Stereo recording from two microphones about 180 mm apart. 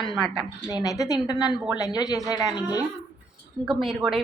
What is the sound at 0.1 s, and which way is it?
Speech, centre (ahead or behind).